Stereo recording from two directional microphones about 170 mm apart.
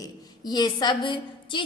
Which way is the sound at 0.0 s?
25° left (ahead or behind).